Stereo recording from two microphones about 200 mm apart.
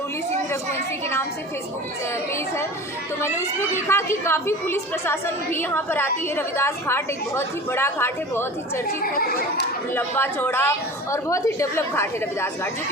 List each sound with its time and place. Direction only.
3.2 s a woman's voice: 15° left (ahead or behind)
9.2 s speech: 50° left (ahead or behind)
9.9 s a woman's voice: 10° left (ahead or behind)